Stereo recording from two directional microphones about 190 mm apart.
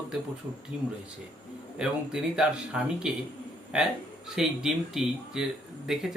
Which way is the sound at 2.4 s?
5° right (ahead or behind).